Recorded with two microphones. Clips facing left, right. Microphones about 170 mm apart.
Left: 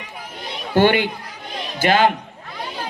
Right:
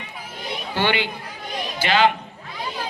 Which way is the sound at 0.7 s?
45° left (ahead or behind).